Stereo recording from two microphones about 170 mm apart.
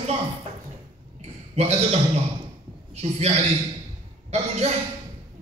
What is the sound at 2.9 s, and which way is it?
Speech, 40° right (ahead or behind).